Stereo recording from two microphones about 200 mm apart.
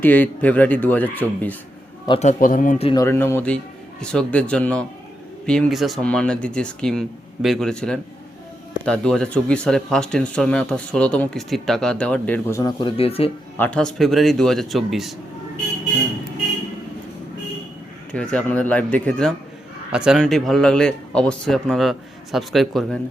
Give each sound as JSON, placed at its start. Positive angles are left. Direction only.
{"t": 0.0, "sound": "speech", "side_deg": 10}
{"t": 2.0, "sound": "speech", "side_deg": 35}
{"t": 2.9, "sound": "speech", "side_deg": 15}
{"t": 13.6, "sound": "speech", "side_deg": 5}
{"t": 18.1, "sound": "speech", "side_deg": 5}